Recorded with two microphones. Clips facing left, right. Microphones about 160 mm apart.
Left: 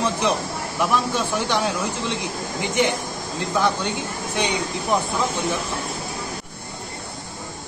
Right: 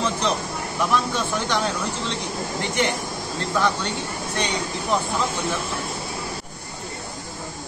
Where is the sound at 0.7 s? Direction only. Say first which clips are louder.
Left 1 dB; 10° left (ahead or behind).